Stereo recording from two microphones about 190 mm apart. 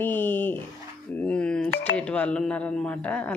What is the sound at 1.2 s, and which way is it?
A man's voice, 5° left (ahead or behind).